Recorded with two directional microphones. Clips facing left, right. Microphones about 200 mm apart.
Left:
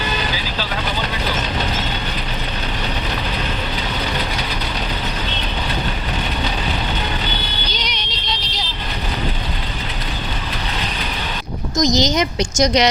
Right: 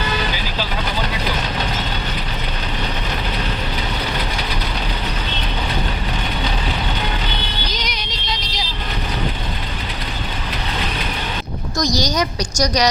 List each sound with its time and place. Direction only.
7.7 s music: 10° right (ahead or behind)
11.8 s a woman's voice: 20° left (ahead or behind)